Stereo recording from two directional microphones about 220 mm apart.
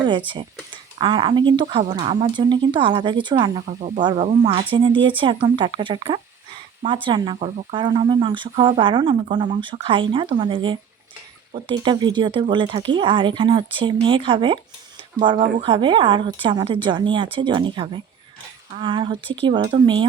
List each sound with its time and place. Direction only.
0.3 s speech: 20° right (ahead or behind)